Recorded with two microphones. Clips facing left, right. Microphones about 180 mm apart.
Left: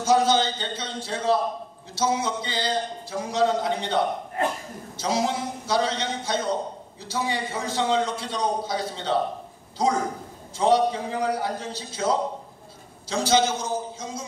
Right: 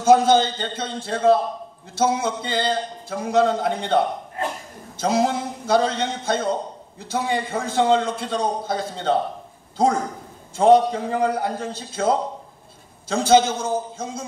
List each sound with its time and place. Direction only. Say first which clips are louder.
0.0 s a man's voice: right 5 dB; 50° right (ahead or behind)
10.6 s a man's voice: right 5 dB; 50° right (ahead or behind)